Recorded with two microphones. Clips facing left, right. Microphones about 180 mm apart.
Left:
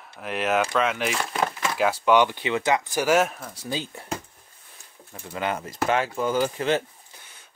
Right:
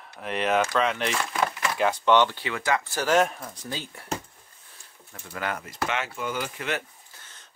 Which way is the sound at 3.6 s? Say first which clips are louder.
Left 6 dB; 20° left (ahead or behind).